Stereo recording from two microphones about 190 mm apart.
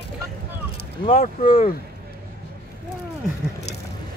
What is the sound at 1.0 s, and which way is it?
Speech, 40° left (ahead or behind).